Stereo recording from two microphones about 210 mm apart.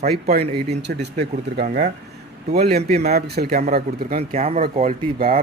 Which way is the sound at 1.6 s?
45° right (ahead or behind).